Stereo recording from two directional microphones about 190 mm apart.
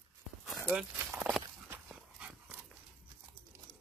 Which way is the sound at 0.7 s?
5° right (ahead or behind).